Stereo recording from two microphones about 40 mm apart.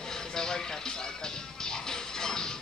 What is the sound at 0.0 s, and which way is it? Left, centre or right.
Music, centre.